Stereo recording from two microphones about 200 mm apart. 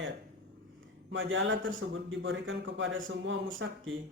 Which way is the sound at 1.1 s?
70° right (ahead or behind).